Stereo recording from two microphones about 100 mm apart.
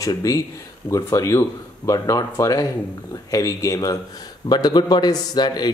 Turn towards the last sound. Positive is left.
turn(degrees=45)  # may be behind; listen again after turning